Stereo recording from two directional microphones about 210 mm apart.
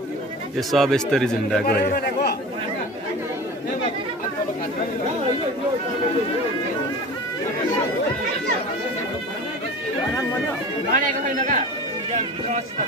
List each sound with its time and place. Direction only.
0.6 s speech: centre (ahead or behind)
1.7 s speech: 45° left (ahead or behind)
10.9 s a man's voice: 40° right (ahead or behind)